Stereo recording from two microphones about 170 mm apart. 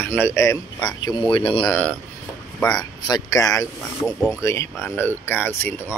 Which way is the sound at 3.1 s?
20° left (ahead or behind).